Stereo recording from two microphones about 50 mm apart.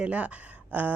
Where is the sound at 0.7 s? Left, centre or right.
Right.